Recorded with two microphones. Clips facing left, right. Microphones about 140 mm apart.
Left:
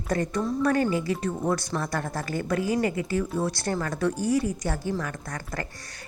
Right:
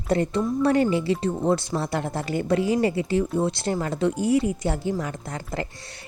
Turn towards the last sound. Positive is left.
turn(degrees=-25)  # may be behind; listen again after turning